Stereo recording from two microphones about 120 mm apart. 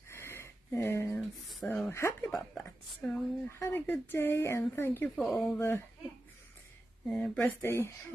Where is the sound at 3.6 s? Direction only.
15° left (ahead or behind).